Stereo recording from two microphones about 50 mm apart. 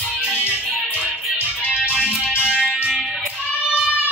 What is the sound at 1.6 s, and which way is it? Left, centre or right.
Music, right.